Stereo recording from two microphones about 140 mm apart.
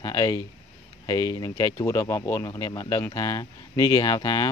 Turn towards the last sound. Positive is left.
turn(degrees=25)  # may be behind; listen again after turning